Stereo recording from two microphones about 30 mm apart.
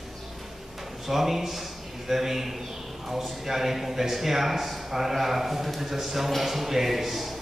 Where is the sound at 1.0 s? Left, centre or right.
Centre.